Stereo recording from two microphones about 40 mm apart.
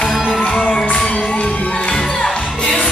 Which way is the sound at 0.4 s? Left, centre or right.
Left.